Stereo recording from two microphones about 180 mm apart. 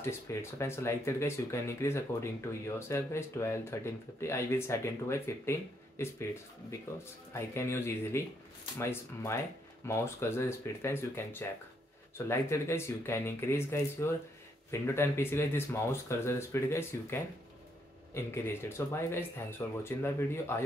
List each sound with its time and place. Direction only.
0.0 s speech: 15° left (ahead or behind)
7.3 s speech: 15° left (ahead or behind)